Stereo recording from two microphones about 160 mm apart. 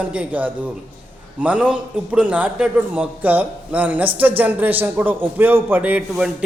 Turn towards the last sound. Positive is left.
turn(degrees=-5)  # may be behind; listen again after turning